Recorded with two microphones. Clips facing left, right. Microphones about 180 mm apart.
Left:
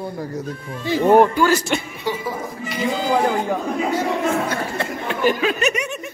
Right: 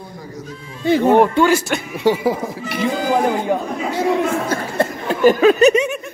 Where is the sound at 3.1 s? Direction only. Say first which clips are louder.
Right 2 dB; 15° right (ahead or behind).